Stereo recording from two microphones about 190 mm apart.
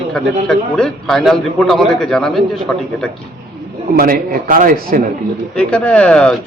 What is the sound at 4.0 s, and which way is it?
Speech, 50° right (ahead or behind).